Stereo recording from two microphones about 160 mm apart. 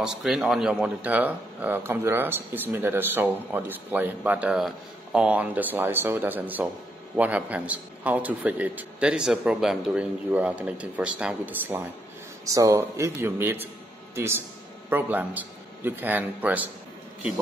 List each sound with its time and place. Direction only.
0.0 s speech: 5° right (ahead or behind)